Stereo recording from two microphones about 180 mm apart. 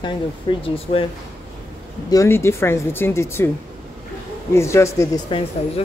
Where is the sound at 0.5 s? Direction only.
30° left (ahead or behind).